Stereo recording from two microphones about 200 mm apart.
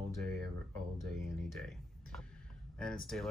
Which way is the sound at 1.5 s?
Centre (ahead or behind).